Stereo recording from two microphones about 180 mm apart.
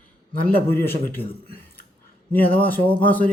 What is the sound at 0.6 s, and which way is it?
Speech, 10° left (ahead or behind).